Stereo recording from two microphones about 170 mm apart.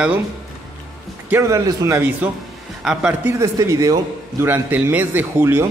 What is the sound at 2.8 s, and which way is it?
A man's voice, 5° right (ahead or behind).